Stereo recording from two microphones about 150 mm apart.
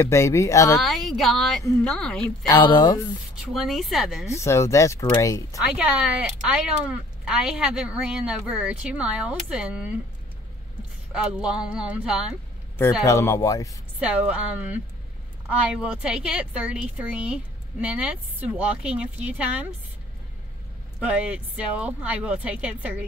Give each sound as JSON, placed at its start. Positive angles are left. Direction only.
{"t": 0.0, "sound": "speech", "side_deg": 20}
{"t": 0.7, "sound": "speech", "side_deg": 0}
{"t": 2.4, "sound": "speech", "side_deg": 25}
{"t": 3.4, "sound": "speech", "side_deg": 0}
{"t": 4.3, "sound": "speech", "side_deg": 20}
{"t": 5.8, "sound": "speech", "side_deg": -5}
{"t": 11.1, "sound": "speech", "side_deg": -5}
{"t": 13.0, "sound": "speech", "side_deg": 20}
{"t": 13.9, "sound": "speech", "side_deg": -10}
{"t": 21.0, "sound": "speech", "side_deg": -10}